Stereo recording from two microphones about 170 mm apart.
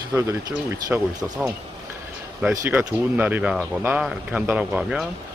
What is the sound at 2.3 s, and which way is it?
Speech, 5° right (ahead or behind).